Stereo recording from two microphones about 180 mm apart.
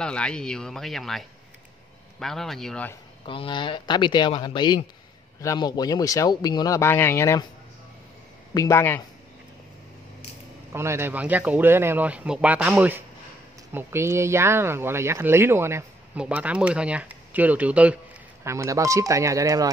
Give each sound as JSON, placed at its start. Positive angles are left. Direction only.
{"t": 0.0, "sound": "speech", "side_deg": 5}
{"t": 3.3, "sound": "speech", "side_deg": 30}
{"t": 8.5, "sound": "speech", "side_deg": 15}
{"t": 10.7, "sound": "speech", "side_deg": -15}